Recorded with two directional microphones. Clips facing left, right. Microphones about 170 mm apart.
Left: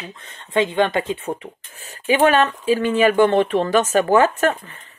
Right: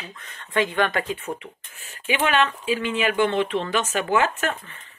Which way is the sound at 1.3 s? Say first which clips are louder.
Left 4 dB; 35° left (ahead or behind).